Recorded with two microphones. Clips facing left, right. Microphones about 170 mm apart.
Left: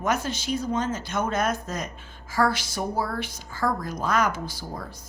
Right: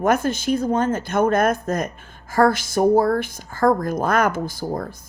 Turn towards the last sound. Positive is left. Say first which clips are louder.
# right 10 dB
turn(degrees=-50)  # may be behind; listen again after turning